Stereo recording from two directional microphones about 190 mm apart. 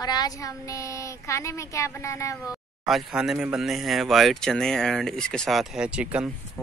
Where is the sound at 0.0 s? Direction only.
20° left (ahead or behind).